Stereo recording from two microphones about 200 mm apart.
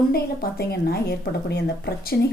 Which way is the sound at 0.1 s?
50° left (ahead or behind).